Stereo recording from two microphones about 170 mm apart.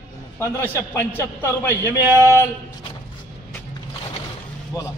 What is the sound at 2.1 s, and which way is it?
Speech, 15° left (ahead or behind).